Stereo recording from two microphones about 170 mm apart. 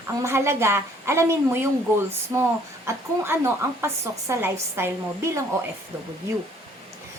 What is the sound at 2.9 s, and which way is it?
A woman's voice, 15° right (ahead or behind).